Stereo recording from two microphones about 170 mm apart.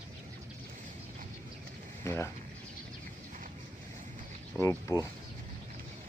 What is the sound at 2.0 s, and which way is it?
Speech, 15° left (ahead or behind).